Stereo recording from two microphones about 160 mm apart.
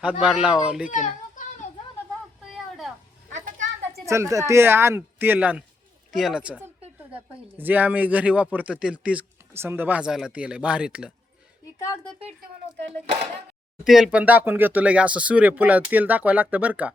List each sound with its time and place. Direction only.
0.0 s speech: 5° right (ahead or behind)
0.9 s children playing: 50° left (ahead or behind)
2.4 s a sound: centre (ahead or behind)
4.0 s speech: 20° right (ahead or behind)
13.8 s speech: centre (ahead or behind)